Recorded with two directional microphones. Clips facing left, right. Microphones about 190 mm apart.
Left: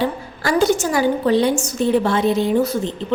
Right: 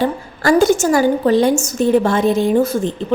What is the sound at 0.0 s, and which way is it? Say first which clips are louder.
A woman's voice: right 4 dB; 45° right (ahead or behind).